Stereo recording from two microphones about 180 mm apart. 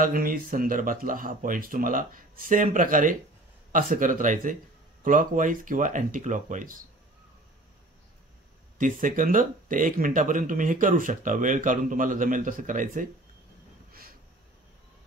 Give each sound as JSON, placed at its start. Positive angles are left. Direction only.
{"t": 0.0, "sound": "speech", "side_deg": -50}
{"t": 8.7, "sound": "speech", "side_deg": -45}